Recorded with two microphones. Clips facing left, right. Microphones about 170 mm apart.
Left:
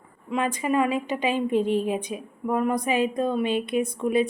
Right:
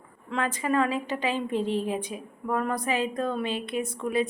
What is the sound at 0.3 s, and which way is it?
A woman's voice, 15° left (ahead or behind).